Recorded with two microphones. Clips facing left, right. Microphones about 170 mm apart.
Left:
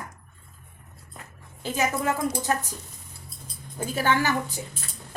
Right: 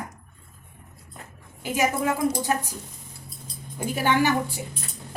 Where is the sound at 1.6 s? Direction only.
10° right (ahead or behind).